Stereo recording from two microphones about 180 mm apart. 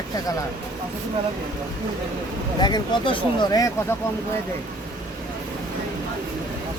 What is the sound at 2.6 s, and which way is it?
Speech, 25° left (ahead or behind).